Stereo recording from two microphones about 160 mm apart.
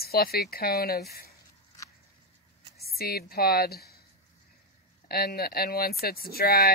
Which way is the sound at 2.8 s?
75° left (ahead or behind).